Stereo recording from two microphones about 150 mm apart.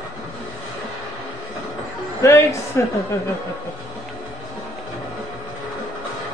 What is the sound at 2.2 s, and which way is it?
Music, 20° left (ahead or behind).